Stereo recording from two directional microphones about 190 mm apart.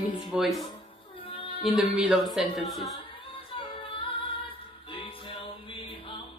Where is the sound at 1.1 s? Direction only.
25° left (ahead or behind).